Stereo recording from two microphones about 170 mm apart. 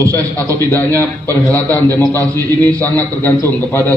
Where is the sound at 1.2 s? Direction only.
20° right (ahead or behind).